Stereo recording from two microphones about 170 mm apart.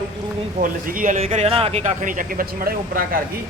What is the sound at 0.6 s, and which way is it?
Speech, 55° right (ahead or behind).